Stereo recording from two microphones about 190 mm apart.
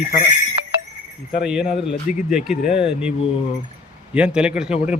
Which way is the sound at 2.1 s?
45° left (ahead or behind).